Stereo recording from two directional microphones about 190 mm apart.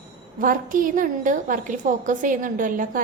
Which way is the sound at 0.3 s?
45° right (ahead or behind).